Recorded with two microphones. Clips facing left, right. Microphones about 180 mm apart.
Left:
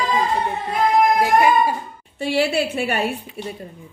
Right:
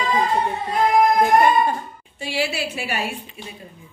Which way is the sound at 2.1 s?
55° left (ahead or behind).